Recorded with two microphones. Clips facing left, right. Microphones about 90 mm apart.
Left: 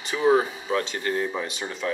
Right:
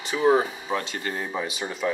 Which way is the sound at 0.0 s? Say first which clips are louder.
Even; centre (ahead or behind).